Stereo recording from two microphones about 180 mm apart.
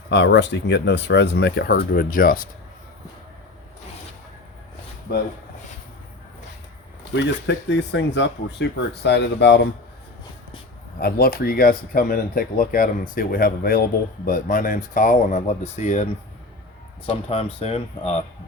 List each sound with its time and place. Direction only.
0.1 s speech: 80° left; by 2.4 s 50° left (ahead or behind)
5.1 s speech: 60° left (ahead or behind)
7.0 s speech: 75° left (ahead or behind)
11.0 s speech: 55° left (ahead or behind); by 16.0 s 40° left (ahead or behind)
17.1 s speech: 35° left (ahead or behind)